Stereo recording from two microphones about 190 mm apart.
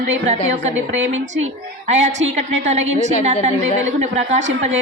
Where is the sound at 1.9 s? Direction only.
40° right (ahead or behind).